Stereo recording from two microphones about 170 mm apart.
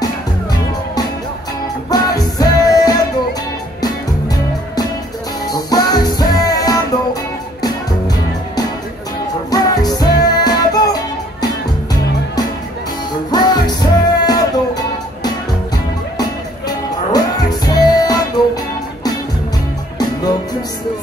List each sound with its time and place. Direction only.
0.0 s music: 25° left (ahead or behind)
5.5 s music: 25° left (ahead or behind)
9.5 s music: 25° left (ahead or behind)
13.3 s music: 25° left (ahead or behind)